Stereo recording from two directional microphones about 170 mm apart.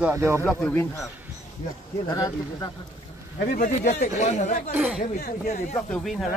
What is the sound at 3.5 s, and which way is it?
Speech, 50° left (ahead or behind).